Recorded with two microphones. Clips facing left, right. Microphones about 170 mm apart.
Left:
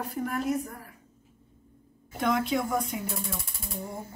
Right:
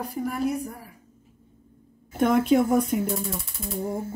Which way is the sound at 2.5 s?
55° right (ahead or behind).